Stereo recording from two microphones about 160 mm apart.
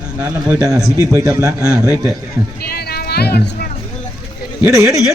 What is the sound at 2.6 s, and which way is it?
Music, 75° left (ahead or behind).